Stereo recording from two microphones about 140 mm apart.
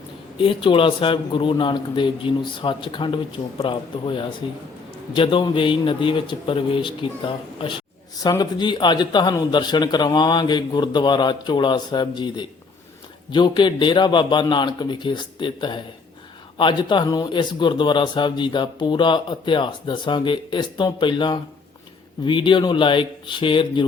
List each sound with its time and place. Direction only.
0.3 s speech: 40° left (ahead or behind)